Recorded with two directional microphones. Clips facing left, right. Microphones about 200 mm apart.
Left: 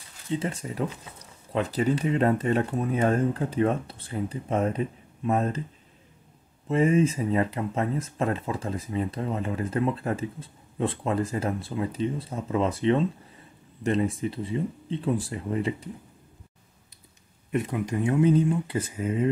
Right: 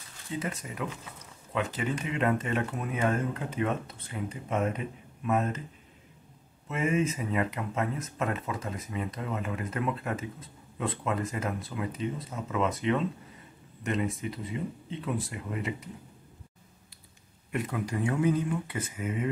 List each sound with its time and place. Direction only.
0.3 s speech: 30° left (ahead or behind)
6.7 s speech: 30° left (ahead or behind)
17.5 s speech: 20° left (ahead or behind)